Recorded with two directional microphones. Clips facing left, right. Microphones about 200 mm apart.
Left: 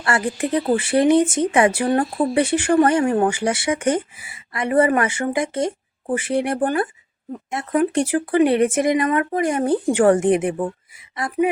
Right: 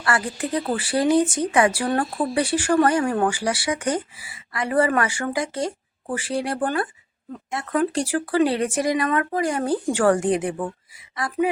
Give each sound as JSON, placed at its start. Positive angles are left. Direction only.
{"t": 0.0, "sound": "speech", "side_deg": 25}